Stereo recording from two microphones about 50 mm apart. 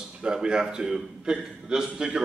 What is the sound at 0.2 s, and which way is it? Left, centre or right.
A man's voice, centre.